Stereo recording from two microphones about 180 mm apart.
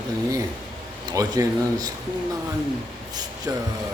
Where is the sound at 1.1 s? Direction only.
20° right (ahead or behind).